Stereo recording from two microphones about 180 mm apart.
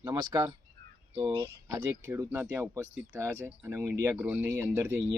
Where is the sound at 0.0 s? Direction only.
20° right (ahead or behind).